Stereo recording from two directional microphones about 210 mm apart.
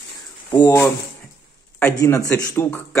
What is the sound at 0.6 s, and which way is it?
Speech, 15° left (ahead or behind).